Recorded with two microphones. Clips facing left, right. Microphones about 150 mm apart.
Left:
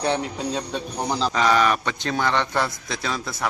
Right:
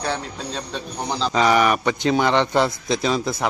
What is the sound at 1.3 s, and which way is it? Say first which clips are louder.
A man's voice: right 3 dB; 15° right (ahead or behind).